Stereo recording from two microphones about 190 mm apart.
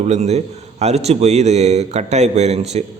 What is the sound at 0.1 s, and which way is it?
A man's voice, 35° right (ahead or behind).